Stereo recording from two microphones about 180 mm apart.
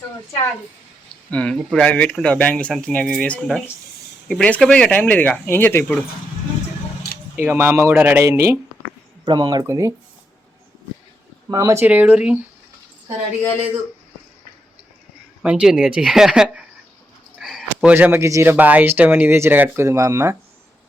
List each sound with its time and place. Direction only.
1.3 s speech: 5° left (ahead or behind)
7.3 s speech: 10° right (ahead or behind)
11.5 s speech: 15° right (ahead or behind)
15.4 s speech: 5° right (ahead or behind)